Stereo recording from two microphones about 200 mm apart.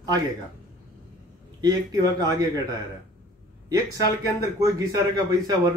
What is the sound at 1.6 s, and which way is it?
Speech, 20° right (ahead or behind).